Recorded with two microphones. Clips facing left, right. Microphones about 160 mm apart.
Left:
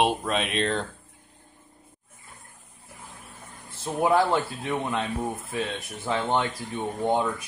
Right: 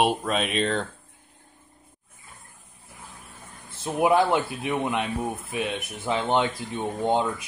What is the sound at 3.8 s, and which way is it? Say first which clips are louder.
Speech: right 1 dB; 15° right (ahead or behind).